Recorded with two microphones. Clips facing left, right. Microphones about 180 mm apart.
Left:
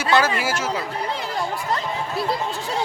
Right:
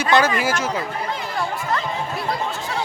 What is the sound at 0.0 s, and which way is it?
Speech, 5° left (ahead or behind).